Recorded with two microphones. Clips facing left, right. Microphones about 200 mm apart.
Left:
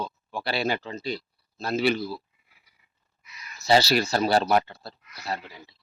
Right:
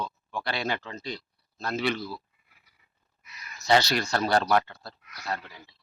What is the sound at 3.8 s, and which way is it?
Speech, 5° left (ahead or behind).